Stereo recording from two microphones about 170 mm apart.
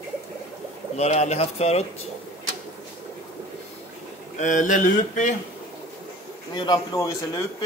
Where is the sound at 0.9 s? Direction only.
40° left (ahead or behind).